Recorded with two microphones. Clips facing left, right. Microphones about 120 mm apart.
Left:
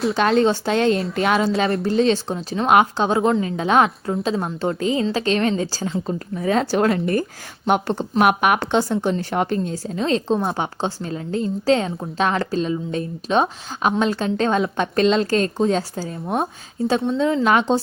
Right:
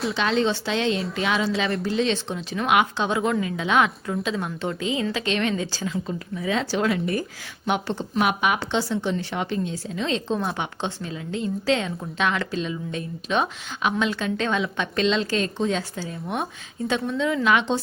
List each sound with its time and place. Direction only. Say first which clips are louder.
0.1 s speech: left 6 dB; 50° left (ahead or behind)